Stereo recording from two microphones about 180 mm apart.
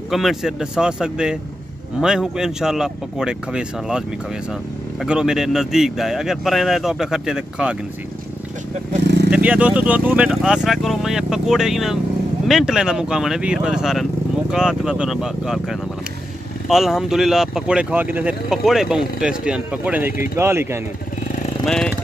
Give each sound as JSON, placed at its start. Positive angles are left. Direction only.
{"t": 0.1, "sound": "speech", "side_deg": 0}
{"t": 5.0, "sound": "speech", "side_deg": -5}
{"t": 9.0, "sound": "vehicle", "side_deg": -70}
{"t": 9.3, "sound": "speech", "side_deg": -10}
{"t": 21.6, "sound": "speech", "side_deg": 5}